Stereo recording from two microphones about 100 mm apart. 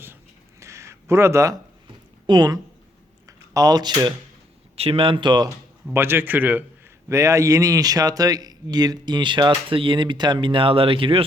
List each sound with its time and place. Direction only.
0.6 s a sound: 30° right (ahead or behind)
2.2 s speech: 45° right (ahead or behind)
4.8 s speech: 65° right (ahead or behind); by 5.5 s 50° right (ahead or behind)
5.9 s a man's voice: 25° right (ahead or behind)
7.1 s speech: 30° right (ahead or behind); by 11.2 s 60° right (ahead or behind)